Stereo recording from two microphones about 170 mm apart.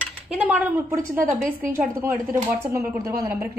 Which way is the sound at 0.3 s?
10° right (ahead or behind).